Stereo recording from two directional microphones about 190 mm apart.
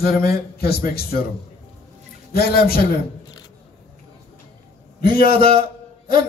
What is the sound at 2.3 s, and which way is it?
Speech, 55° left (ahead or behind).